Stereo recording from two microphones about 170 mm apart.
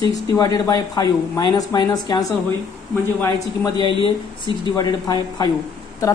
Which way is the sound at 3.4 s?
25° left (ahead or behind).